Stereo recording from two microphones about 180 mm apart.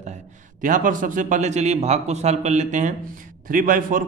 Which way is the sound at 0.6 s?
45° right (ahead or behind).